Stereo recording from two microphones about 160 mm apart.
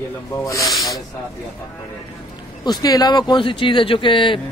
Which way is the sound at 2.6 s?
25° left (ahead or behind).